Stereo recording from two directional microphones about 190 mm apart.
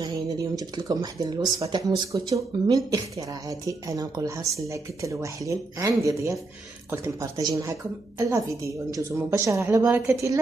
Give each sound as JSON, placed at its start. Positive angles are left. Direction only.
{"t": 0.0, "sound": "speech", "side_deg": -20}